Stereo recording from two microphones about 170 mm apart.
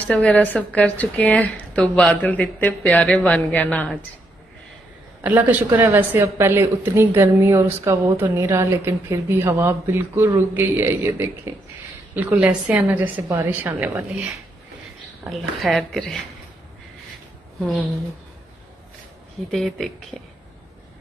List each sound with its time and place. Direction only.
0.0 s a woman's voice: 10° left (ahead or behind)
5.2 s a woman's voice: 10° right (ahead or behind)
15.2 s speech: centre (ahead or behind)
19.5 s speech: centre (ahead or behind)